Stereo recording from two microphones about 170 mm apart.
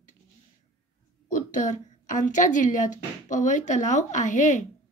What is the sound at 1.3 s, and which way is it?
Speech, 50° left (ahead or behind).